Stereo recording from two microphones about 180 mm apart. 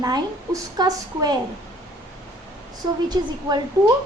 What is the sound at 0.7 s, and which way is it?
Speech, 20° right (ahead or behind).